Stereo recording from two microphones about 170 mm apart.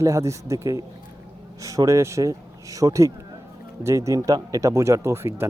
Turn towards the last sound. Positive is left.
turn(degrees=-15)  # may be behind; listen again after turning